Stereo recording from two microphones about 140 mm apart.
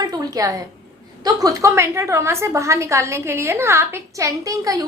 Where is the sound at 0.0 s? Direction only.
25° right (ahead or behind).